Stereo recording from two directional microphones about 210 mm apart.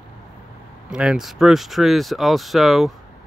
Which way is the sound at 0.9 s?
5° right (ahead or behind).